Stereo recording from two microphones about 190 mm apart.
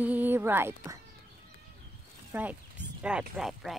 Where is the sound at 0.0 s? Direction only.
10° right (ahead or behind).